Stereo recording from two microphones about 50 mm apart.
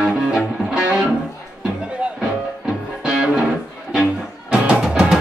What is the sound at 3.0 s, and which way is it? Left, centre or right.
Music, centre.